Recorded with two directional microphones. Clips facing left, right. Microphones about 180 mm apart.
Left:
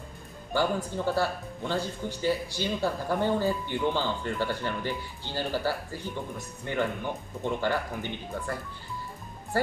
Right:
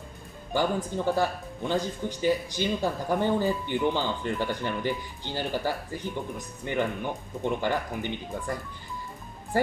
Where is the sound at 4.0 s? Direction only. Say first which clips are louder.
Right 1 dB; 15° right (ahead or behind).